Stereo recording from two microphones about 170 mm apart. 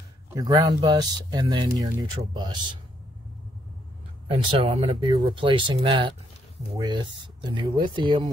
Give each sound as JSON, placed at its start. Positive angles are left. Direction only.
{"t": 0.3, "sound": "speech", "side_deg": -25}
{"t": 4.5, "sound": "speech", "side_deg": -35}